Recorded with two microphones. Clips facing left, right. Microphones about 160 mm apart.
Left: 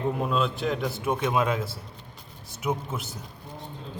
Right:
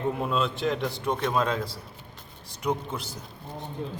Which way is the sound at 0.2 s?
Centre (ahead or behind).